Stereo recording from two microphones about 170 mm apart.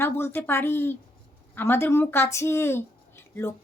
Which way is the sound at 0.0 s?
15° left (ahead or behind).